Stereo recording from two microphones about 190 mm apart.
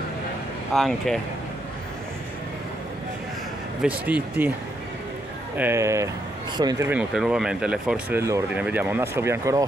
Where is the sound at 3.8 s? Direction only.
10° right (ahead or behind).